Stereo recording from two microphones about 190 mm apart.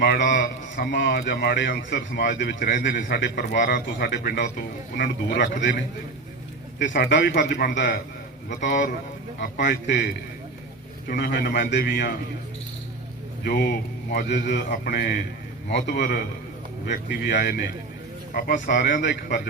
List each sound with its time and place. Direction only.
0.3 s speech: 55° left (ahead or behind)
1.9 s a man's voice: 45° left (ahead or behind)
2.4 s speech: 60° left (ahead or behind)
6.8 s a man's voice: 45° left (ahead or behind)
9.6 s a man's voice: 65° left (ahead or behind)
11.1 s speech: 60° left (ahead or behind)
13.4 s a man's voice: 55° left (ahead or behind)